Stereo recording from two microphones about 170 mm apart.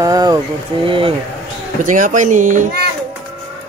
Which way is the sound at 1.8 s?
50° right (ahead or behind).